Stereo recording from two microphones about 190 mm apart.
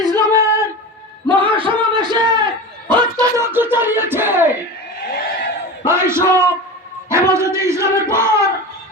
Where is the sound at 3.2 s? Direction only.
15° right (ahead or behind).